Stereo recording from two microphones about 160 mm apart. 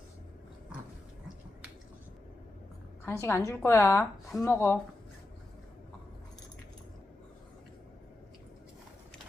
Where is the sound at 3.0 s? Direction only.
15° left (ahead or behind).